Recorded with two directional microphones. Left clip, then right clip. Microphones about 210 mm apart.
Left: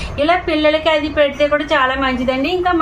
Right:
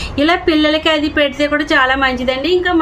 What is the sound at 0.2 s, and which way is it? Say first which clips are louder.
A woman's voice: right 1 dB; 50° right (ahead or behind).